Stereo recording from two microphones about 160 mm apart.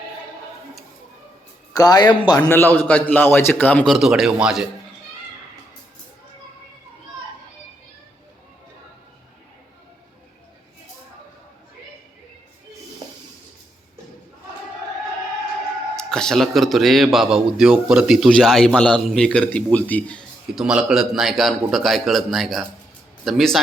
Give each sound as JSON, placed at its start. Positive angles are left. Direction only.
{"t": 1.7, "sound": "speech", "side_deg": 25}
{"t": 2.5, "sound": "a man's voice", "side_deg": 10}
{"t": 16.0, "sound": "a man's voice", "side_deg": 5}
{"t": 20.6, "sound": "a man's voice", "side_deg": -5}